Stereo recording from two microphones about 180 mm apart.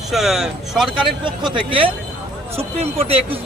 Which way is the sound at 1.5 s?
30° right (ahead or behind).